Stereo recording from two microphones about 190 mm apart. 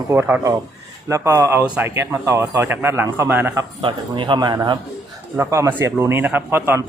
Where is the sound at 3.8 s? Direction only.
25° right (ahead or behind).